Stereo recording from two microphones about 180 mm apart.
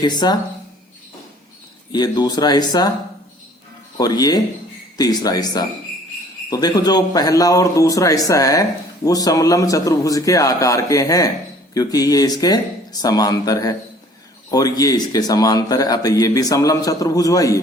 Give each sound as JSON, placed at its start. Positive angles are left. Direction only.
{"t": 0.0, "sound": "speech", "side_deg": 25}
{"t": 1.9, "sound": "speech", "side_deg": 25}
{"t": 3.9, "sound": "speech", "side_deg": 20}